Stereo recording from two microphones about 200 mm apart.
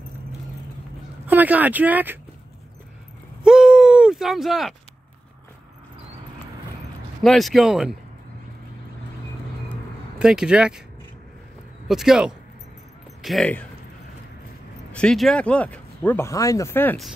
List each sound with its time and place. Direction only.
1.2 s speech: 10° right (ahead or behind)
3.4 s a sound: centre (ahead or behind)
7.2 s speech: centre (ahead or behind)
10.1 s speech: 5° right (ahead or behind)
11.9 s speech: centre (ahead or behind)
14.9 s speech: 5° left (ahead or behind)